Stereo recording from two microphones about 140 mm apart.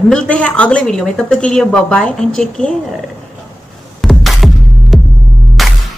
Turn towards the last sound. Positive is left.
turn(degrees=0)  # may be behind; listen again after turning